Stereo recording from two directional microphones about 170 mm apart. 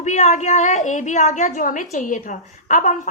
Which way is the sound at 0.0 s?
45° left (ahead or behind).